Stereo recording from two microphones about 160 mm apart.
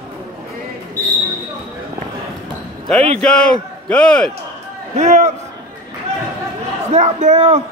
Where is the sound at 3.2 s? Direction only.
5° left (ahead or behind).